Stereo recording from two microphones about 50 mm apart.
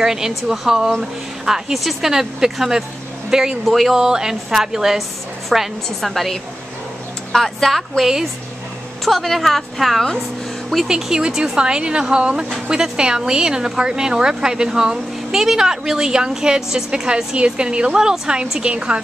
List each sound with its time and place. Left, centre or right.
0.0 s speech: centre
3.6 s a woman's voice: centre
10.9 s speech: centre